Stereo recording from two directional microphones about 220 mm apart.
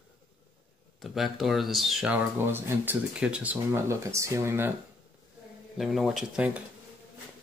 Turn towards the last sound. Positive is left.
turn(degrees=-5)  # may be behind; listen again after turning